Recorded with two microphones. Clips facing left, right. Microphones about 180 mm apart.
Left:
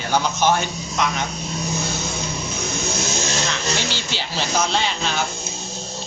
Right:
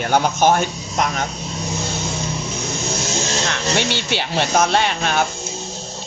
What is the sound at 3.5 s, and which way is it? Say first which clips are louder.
Speech: right 4 dB; 60° right (ahead or behind).